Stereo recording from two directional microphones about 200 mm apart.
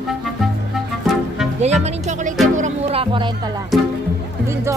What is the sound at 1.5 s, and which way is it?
Music, 35° right (ahead or behind).